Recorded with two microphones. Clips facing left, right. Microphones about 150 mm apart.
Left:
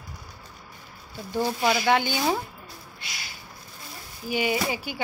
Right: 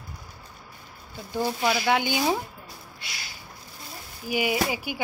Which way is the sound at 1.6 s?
Centre (ahead or behind).